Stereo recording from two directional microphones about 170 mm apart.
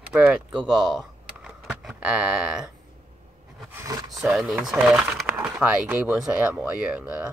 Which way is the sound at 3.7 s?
20° right (ahead or behind).